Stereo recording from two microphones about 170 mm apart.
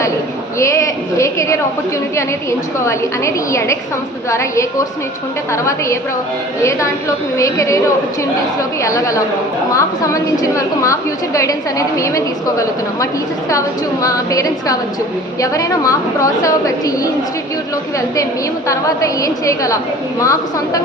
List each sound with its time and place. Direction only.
0.6 s a woman's voice: 15° left (ahead or behind)
6.6 s a woman's voice: 15° left (ahead or behind)
8.8 s a woman's voice: 20° left (ahead or behind)
18.7 s a woman's voice: 20° left (ahead or behind)